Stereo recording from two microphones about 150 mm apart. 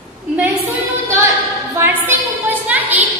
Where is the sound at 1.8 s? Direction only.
15° right (ahead or behind).